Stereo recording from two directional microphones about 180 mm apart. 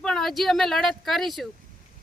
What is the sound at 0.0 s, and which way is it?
Speech, 5° left (ahead or behind).